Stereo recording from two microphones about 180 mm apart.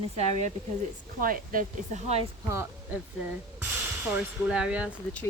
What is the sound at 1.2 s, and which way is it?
Speech, 50° right (ahead or behind).